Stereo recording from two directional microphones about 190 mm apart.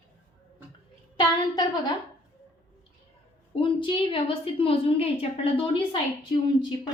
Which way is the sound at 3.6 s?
25° left (ahead or behind).